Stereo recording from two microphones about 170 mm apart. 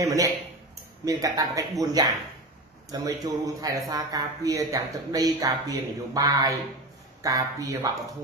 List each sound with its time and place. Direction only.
0.0 s speech: 20° right (ahead or behind)